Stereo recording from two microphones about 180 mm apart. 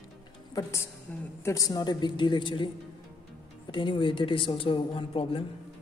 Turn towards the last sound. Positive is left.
turn(degrees=30)  # may be behind; listen again after turning